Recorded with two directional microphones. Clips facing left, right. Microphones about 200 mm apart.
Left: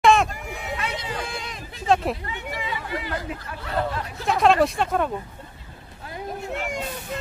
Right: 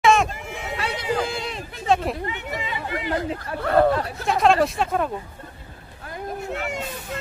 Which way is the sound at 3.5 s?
55° right (ahead or behind).